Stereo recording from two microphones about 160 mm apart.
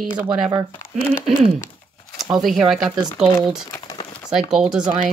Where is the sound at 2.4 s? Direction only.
Centre (ahead or behind).